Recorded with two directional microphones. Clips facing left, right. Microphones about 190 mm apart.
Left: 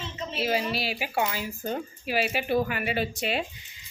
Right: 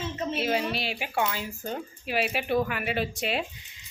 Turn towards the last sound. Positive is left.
turn(degrees=0)  # may be behind; listen again after turning